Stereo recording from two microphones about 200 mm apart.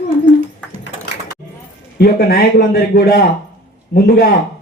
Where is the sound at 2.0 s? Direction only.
50° left (ahead or behind).